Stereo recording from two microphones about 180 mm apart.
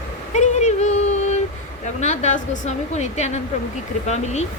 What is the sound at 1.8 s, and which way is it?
A woman's voice, 40° left (ahead or behind).